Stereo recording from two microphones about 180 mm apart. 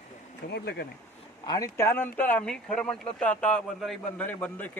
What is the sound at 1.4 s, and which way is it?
A man's voice, 20° left (ahead or behind).